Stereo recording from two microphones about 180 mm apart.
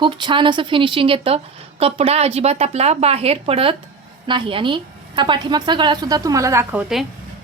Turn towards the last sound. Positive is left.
turn(degrees=-5)  # may be behind; listen again after turning